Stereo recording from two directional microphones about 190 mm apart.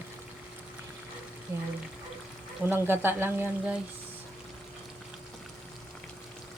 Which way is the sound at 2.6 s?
10° right (ahead or behind).